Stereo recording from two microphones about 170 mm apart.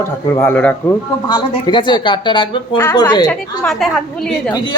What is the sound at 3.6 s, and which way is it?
Speech, centre (ahead or behind).